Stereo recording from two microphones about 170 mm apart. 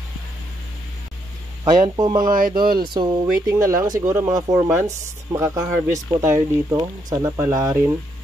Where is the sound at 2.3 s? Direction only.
55° right (ahead or behind).